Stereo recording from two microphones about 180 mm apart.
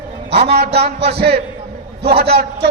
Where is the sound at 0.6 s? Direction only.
60° right (ahead or behind).